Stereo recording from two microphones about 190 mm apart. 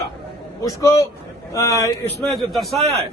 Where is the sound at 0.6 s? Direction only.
15° left (ahead or behind).